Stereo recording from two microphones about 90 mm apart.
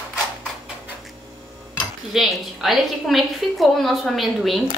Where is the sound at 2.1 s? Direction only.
Centre (ahead or behind).